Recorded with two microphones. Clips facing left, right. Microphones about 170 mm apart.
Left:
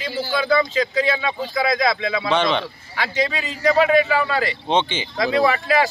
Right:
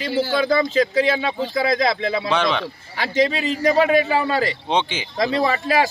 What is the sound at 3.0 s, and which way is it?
A man's voice, 30° right (ahead or behind).